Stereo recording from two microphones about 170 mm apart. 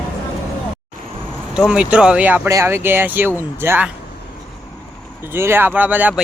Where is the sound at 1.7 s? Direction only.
5° right (ahead or behind).